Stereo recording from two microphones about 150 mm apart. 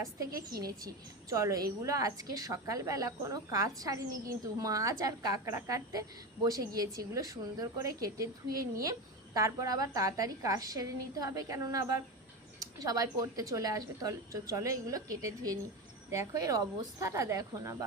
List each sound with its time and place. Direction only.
1.3 s a woman's voice: 20° right (ahead or behind)